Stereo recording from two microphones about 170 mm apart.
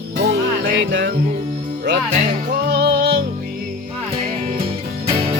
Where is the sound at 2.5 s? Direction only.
70° right (ahead or behind).